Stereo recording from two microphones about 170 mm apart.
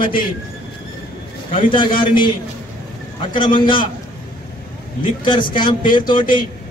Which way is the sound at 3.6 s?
30° left (ahead or behind).